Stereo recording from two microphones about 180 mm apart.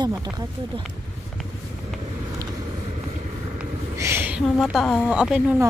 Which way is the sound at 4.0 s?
10° right (ahead or behind).